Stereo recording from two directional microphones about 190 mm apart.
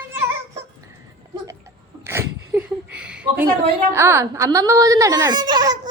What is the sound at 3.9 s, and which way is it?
Speech, 15° right (ahead or behind).